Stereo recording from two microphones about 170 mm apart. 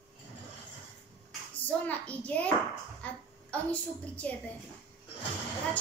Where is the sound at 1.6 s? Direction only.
10° left (ahead or behind).